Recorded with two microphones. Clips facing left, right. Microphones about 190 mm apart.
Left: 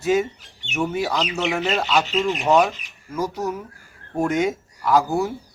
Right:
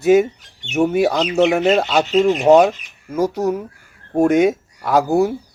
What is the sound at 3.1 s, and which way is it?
Speech, 60° right (ahead or behind).